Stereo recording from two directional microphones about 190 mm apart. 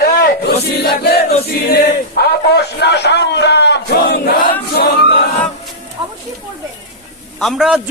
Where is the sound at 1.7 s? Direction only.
60° left (ahead or behind).